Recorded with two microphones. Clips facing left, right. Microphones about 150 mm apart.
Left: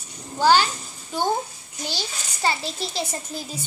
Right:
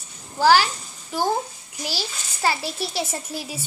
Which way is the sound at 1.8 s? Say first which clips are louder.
Right 1 dB; 5° right (ahead or behind).